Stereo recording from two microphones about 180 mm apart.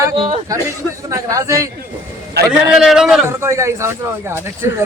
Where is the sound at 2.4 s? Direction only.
65° right (ahead or behind).